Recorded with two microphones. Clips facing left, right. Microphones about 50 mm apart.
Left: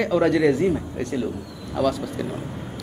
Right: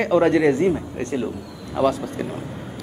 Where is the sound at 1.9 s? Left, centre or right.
Right.